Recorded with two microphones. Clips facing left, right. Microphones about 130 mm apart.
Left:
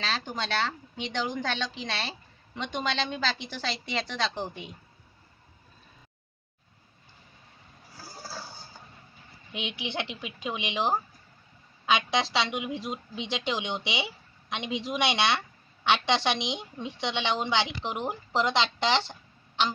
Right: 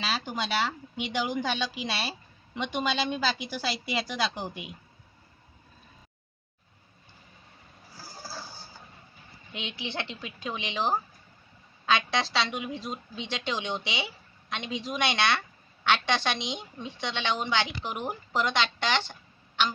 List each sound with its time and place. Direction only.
0.0 s a woman's voice: 10° right (ahead or behind)
9.5 s speech: 20° left (ahead or behind)